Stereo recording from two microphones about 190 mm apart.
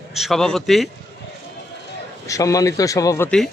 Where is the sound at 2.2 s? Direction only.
15° left (ahead or behind).